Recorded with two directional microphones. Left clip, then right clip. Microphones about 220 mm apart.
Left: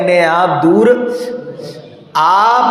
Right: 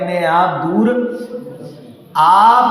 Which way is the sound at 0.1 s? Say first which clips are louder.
Left 2 dB; 40° left (ahead or behind).